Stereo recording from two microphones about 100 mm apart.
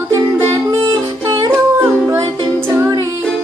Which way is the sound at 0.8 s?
40° right (ahead or behind).